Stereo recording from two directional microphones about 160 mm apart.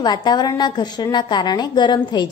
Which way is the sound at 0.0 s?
25° left (ahead or behind).